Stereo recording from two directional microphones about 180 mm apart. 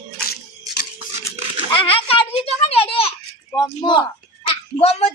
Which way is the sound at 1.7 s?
30° left (ahead or behind).